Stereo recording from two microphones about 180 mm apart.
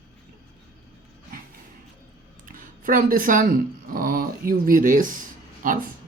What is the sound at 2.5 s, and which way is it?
Speech, 50° right (ahead or behind).